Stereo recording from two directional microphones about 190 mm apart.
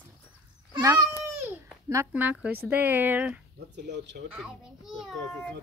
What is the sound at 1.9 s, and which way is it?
Speech, 10° right (ahead or behind).